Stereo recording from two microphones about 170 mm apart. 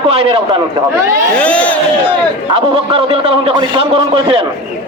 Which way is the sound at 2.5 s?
35° right (ahead or behind).